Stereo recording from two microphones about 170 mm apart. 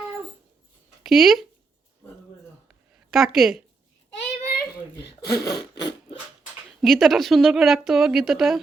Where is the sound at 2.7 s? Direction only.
Centre (ahead or behind).